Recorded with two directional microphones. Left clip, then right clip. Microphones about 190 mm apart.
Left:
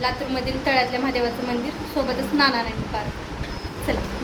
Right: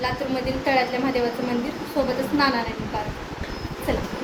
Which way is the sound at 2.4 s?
5° right (ahead or behind).